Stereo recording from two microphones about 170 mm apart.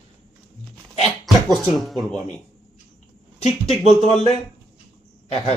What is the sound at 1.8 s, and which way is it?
Speech, centre (ahead or behind).